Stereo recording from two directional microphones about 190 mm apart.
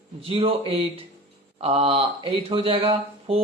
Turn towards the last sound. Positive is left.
turn(degrees=-30)  # may be behind; listen again after turning